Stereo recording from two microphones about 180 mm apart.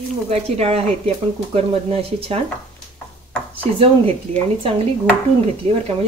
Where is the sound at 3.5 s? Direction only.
30° right (ahead or behind).